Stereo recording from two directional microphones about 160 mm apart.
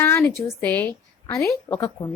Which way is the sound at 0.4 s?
10° left (ahead or behind).